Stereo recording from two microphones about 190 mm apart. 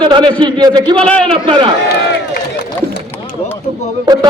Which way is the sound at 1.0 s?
5° left (ahead or behind).